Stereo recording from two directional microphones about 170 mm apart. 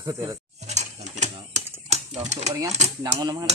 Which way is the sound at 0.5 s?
40° right (ahead or behind).